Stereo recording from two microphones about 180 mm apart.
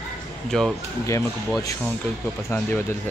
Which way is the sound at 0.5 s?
5° left (ahead or behind).